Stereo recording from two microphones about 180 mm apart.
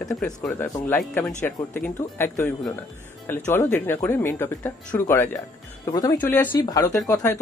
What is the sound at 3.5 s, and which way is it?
Speech, 10° left (ahead or behind).